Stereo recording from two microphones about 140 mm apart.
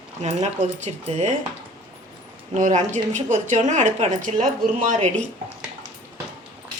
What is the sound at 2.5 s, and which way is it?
A woman's voice, 65° right (ahead or behind).